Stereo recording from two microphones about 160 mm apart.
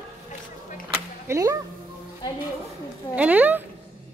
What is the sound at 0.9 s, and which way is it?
Music, 20° right (ahead or behind).